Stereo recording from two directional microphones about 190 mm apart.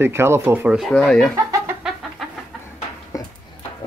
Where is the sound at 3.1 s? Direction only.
15° left (ahead or behind).